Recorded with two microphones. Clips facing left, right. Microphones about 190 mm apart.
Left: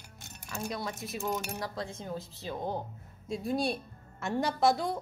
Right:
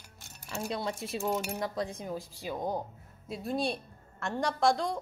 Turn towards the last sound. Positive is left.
turn(degrees=5)  # may be behind; listen again after turning